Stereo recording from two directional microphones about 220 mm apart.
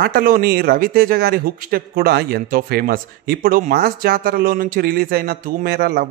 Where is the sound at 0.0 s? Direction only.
40° right (ahead or behind).